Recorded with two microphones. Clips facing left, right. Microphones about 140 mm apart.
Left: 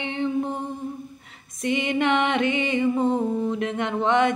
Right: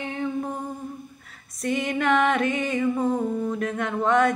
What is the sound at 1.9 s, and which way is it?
Music, 25° left (ahead or behind).